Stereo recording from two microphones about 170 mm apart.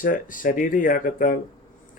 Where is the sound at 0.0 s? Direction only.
50° left (ahead or behind).